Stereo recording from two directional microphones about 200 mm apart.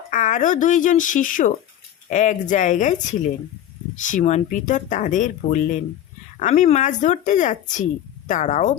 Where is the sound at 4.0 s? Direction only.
40° left (ahead or behind).